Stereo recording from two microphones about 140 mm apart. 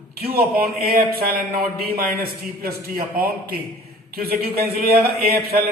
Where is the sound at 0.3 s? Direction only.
90° right.